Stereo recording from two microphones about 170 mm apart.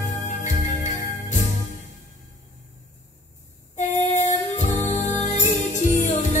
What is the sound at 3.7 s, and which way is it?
Music, 45° left (ahead or behind).